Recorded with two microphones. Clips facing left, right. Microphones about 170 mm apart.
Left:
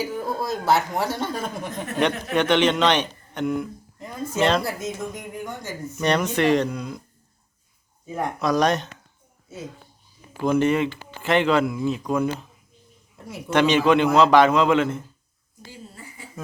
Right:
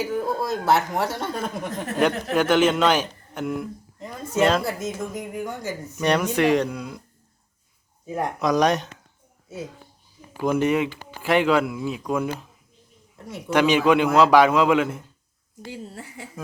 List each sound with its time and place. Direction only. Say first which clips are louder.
0.0 s speech: right 2 dB; centre (ahead or behind)
8.1 s speech: right 1 dB; 15° right (ahead or behind)
10.4 s speech: left 1 dB; 10° right (ahead or behind)
13.5 s speech: even; 10° right (ahead or behind)
15.6 s speech: right 6 dB; 75° right (ahead or behind)